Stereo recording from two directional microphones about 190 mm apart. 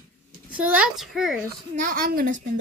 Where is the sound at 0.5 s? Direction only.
5° right (ahead or behind).